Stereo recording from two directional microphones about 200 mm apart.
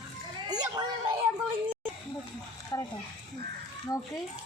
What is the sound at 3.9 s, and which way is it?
Speech, 20° left (ahead or behind).